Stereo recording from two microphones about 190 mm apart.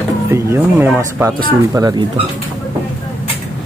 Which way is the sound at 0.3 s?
10° right (ahead or behind).